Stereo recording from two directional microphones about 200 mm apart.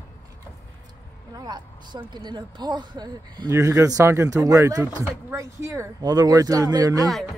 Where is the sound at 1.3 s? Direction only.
20° right (ahead or behind).